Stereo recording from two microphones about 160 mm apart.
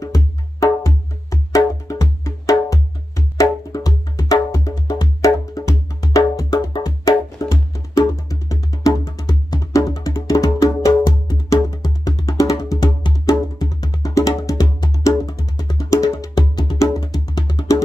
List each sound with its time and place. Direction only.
0.0 s music: 20° left (ahead or behind)